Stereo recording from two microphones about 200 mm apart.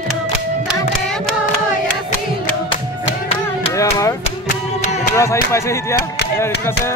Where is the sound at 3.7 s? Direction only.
15° left (ahead or behind).